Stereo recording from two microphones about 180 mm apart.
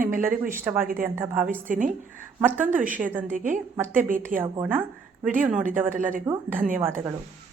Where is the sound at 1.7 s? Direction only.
45° right (ahead or behind).